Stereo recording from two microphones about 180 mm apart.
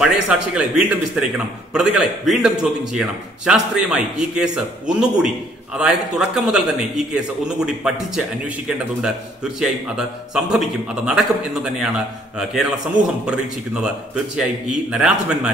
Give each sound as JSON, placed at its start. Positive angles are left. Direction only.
{"t": 0.0, "sound": "a man's voice", "side_deg": -5}